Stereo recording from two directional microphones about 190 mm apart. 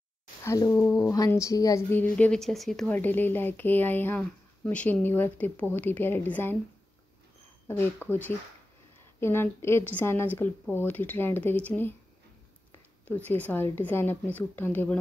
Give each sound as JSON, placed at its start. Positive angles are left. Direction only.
{"t": 0.4, "sound": "speech", "side_deg": 15}
{"t": 7.6, "sound": "speech", "side_deg": 10}
{"t": 13.0, "sound": "speech", "side_deg": 10}